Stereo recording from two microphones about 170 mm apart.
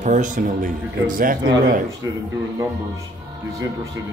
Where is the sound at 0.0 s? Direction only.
50° right (ahead or behind).